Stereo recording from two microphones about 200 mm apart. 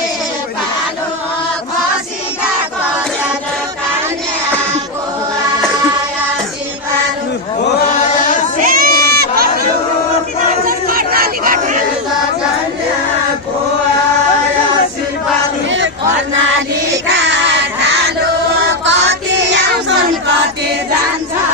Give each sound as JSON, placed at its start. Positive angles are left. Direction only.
{"t": 7.8, "sound": "chant", "side_deg": 40}
{"t": 8.5, "sound": "crowd", "side_deg": -45}
{"t": 10.6, "sound": "chatter", "side_deg": -45}
{"t": 18.9, "sound": "child singing", "side_deg": -65}